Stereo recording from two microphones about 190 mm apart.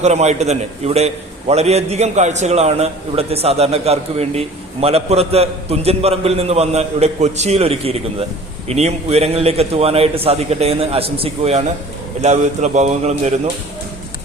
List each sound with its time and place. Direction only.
0.0 s a man's voice: 35° right (ahead or behind)